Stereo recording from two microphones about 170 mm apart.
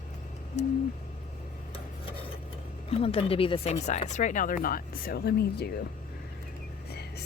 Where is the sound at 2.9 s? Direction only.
35° left (ahead or behind); by 5.7 s 70° left (ahead or behind).